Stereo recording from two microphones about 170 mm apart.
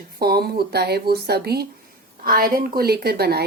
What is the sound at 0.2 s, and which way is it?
A woman's voice, 65° right (ahead or behind).